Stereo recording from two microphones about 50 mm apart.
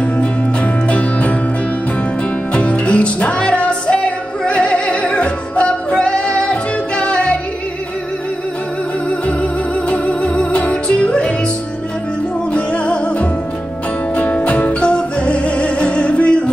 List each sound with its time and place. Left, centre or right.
0.8 s music: left
2.5 s music: left
9.4 s music: left
12.5 s music: left